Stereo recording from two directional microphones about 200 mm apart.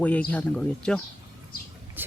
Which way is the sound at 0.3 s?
5° left (ahead or behind).